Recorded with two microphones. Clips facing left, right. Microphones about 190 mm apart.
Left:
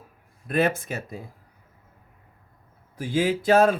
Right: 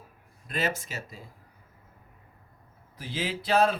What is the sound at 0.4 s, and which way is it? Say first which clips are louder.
Speech: left 8 dB; 55° left (ahead or behind).